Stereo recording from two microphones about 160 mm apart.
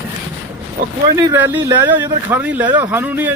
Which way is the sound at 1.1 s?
15° right (ahead or behind).